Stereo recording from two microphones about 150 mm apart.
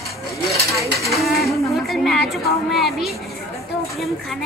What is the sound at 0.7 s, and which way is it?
Dishes, 20° right (ahead or behind).